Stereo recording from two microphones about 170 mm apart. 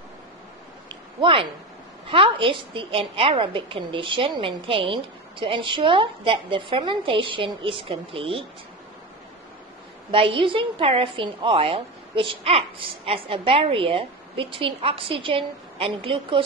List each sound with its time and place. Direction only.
1.2 s a woman's voice: 30° right (ahead or behind)
10.1 s a woman's voice: 30° right (ahead or behind)